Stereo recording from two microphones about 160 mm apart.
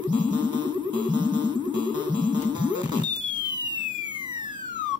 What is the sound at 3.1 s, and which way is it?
Police car, 30° right (ahead or behind).